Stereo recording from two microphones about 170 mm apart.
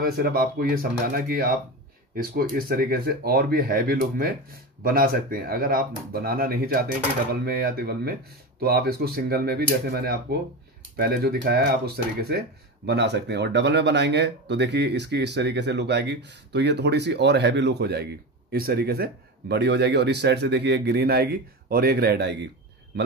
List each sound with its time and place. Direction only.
0.0 s speech: 60° right (ahead or behind)
22.9 s a man's voice: 85° right